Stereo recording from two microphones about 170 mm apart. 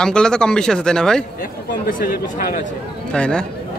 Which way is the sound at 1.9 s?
55° left (ahead or behind).